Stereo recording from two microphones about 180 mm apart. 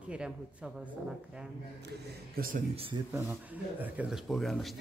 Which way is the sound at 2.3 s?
50° right (ahead or behind).